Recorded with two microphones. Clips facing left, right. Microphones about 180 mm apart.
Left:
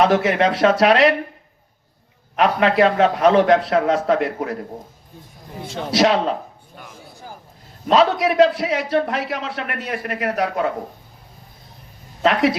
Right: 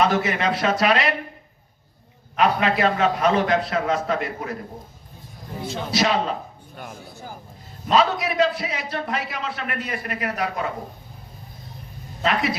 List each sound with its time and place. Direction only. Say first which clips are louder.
0.0 s a man's voice: left 5 dB; 75° left (ahead or behind)
2.3 s a man's voice: left 3 dB; 70° left (ahead or behind)
5.7 s a man's voice: left 6 dB; 75° left (ahead or behind)
7.9 s a man's voice: left 4 dB; 70° left (ahead or behind)
12.2 s a man's voice: left 6 dB; 75° left (ahead or behind)